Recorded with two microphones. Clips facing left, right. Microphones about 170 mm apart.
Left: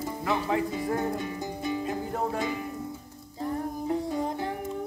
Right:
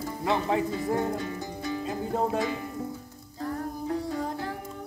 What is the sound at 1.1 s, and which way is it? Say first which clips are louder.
Music: left 1 dB; 20° left (ahead or behind).